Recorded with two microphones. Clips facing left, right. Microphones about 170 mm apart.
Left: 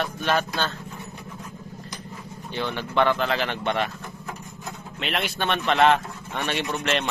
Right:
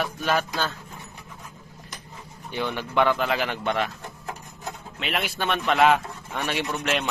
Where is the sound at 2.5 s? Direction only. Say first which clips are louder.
Even; 10° right (ahead or behind).